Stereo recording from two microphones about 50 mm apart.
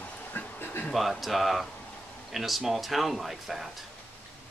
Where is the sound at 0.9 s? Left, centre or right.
Centre.